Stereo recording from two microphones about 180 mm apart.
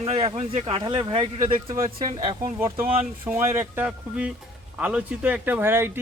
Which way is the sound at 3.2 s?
15° right (ahead or behind).